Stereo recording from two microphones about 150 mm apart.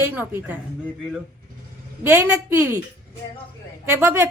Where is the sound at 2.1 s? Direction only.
15° right (ahead or behind).